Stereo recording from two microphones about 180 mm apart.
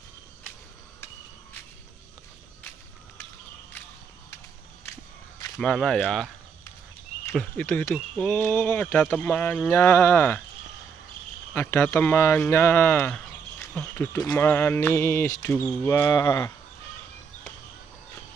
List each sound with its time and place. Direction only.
5.6 s speech: 5° left (ahead or behind)
7.3 s speech: 5° left (ahead or behind)
11.5 s speech: 10° left (ahead or behind)